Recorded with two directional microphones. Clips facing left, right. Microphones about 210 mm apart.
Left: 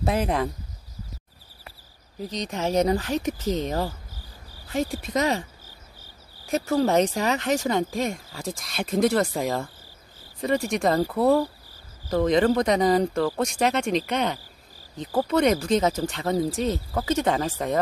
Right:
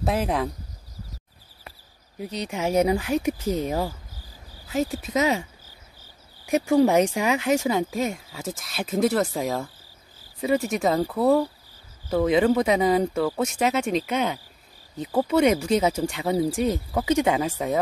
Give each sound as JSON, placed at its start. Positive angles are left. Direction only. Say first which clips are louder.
{"t": 0.0, "sound": "speech", "louder": "even", "side_deg": 0}
{"t": 2.3, "sound": "speech", "louder": "right 1 dB", "side_deg": -10}